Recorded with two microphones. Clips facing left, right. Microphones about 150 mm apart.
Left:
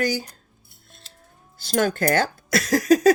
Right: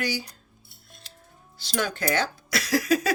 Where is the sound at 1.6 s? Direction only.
50° left (ahead or behind).